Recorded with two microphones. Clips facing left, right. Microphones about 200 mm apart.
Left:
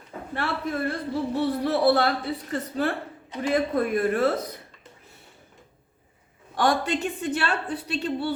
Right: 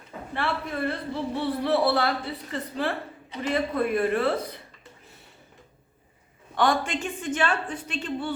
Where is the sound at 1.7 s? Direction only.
45° left (ahead or behind).